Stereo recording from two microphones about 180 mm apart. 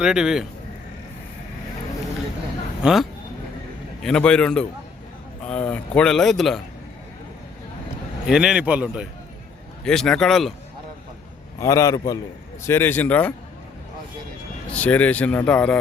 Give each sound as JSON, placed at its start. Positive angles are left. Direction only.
{"t": 0.0, "sound": "speech", "side_deg": -5}
{"t": 2.8, "sound": "speech", "side_deg": 0}
{"t": 8.3, "sound": "speech", "side_deg": -5}
{"t": 9.8, "sound": "speech", "side_deg": 5}
{"t": 11.6, "sound": "speech", "side_deg": 15}
{"t": 14.7, "sound": "speech", "side_deg": 10}